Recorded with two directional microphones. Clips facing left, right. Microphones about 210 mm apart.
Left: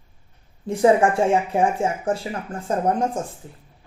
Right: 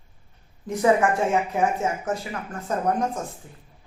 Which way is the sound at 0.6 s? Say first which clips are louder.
Left 3 dB; 30° left (ahead or behind).